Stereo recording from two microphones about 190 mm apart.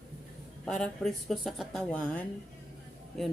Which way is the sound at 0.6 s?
Centre (ahead or behind).